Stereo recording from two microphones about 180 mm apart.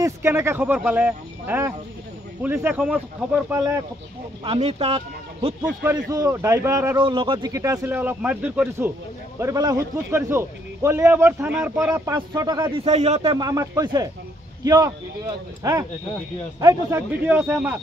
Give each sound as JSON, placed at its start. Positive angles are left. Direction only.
{"t": 0.0, "sound": "a man's voice", "side_deg": -15}
{"t": 4.5, "sound": "speech", "side_deg": -30}
{"t": 6.1, "sound": "a man's voice", "side_deg": -15}
{"t": 7.0, "sound": "a man's voice", "side_deg": -25}
{"t": 12.1, "sound": "speech", "side_deg": -20}
{"t": 12.8, "sound": "a man's voice", "side_deg": -35}
{"t": 13.4, "sound": "a man's voice", "side_deg": -20}